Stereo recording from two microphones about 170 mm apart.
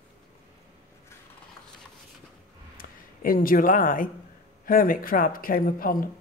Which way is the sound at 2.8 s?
55° left (ahead or behind).